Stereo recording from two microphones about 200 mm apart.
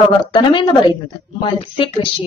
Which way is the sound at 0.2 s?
25° left (ahead or behind).